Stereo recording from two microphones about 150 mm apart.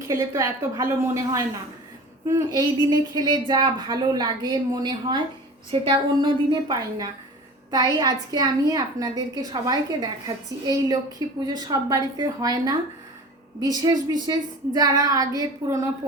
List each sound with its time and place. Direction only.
0.1 s a woman's voice: 20° right (ahead or behind)